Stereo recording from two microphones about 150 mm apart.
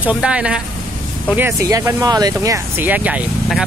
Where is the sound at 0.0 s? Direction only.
5° right (ahead or behind).